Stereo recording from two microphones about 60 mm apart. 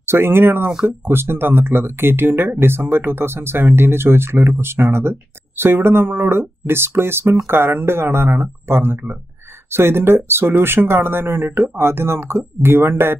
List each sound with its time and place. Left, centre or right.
0.0 s speech: right